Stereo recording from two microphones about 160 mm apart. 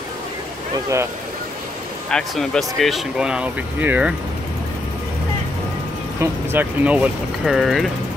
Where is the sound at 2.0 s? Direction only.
5° left (ahead or behind).